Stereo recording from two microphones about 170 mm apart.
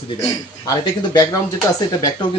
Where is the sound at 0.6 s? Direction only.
25° left (ahead or behind).